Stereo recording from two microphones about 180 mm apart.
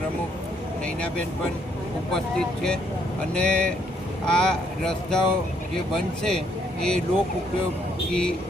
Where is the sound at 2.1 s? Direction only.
5° left (ahead or behind).